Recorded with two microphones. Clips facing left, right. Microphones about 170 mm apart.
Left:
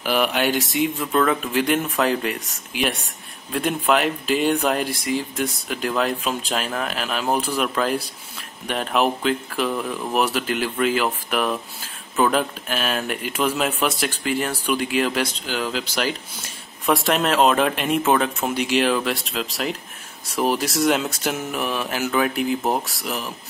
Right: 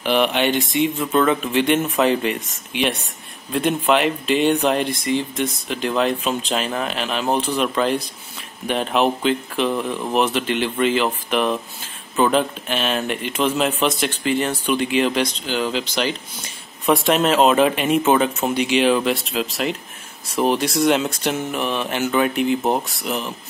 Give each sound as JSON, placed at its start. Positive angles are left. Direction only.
{"t": 0.0, "sound": "speech", "side_deg": 5}